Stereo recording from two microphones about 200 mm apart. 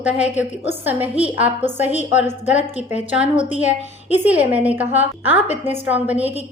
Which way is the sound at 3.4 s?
35° left (ahead or behind).